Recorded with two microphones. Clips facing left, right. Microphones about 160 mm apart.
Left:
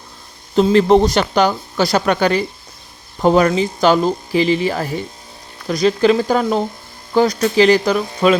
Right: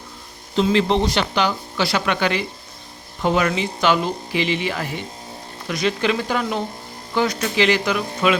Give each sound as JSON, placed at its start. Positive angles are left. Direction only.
{"t": 0.5, "sound": "speech", "side_deg": 45}